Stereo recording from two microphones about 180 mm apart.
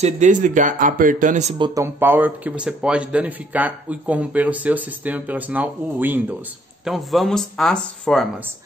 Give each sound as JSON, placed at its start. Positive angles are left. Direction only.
{"t": 0.0, "sound": "speech", "side_deg": -45}
{"t": 1.6, "sound": "speech", "side_deg": -15}